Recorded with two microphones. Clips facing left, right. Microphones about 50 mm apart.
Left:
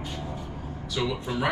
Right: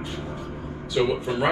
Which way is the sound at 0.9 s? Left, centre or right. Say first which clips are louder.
Right 6 dB; centre.